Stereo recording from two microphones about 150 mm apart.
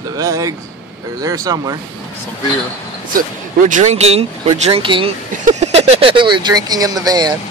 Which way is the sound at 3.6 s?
55° right (ahead or behind).